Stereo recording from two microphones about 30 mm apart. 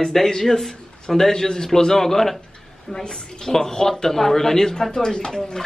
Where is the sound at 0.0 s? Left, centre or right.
Centre.